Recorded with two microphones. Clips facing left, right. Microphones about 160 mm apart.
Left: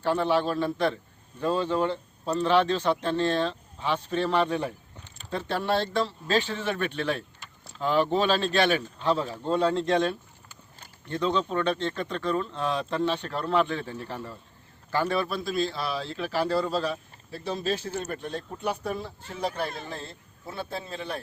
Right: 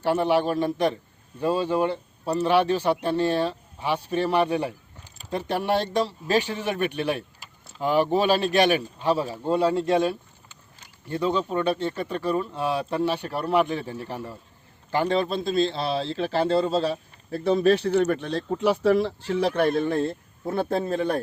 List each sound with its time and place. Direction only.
0.0 s a man's voice: 15° right (ahead or behind); by 17.0 s 30° right (ahead or behind)
17.3 s speech: 60° right (ahead or behind)